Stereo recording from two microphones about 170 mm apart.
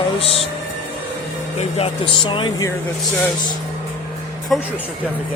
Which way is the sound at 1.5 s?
35° left (ahead or behind).